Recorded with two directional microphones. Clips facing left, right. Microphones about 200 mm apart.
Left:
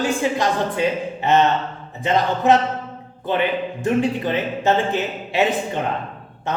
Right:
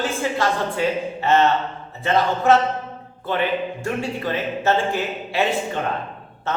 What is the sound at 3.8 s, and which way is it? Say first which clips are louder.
A man's voice: left 6 dB; 20° left (ahead or behind).